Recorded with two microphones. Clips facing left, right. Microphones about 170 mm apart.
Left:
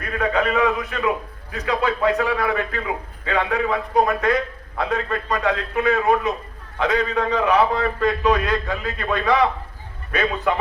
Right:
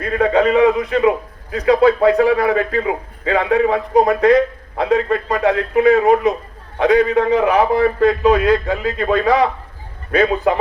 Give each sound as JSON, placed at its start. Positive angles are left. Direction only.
{"t": 0.0, "sound": "a man's voice", "side_deg": -30}